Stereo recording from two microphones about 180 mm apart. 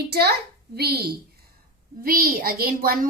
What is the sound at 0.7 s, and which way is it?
A woman's voice, 60° right (ahead or behind).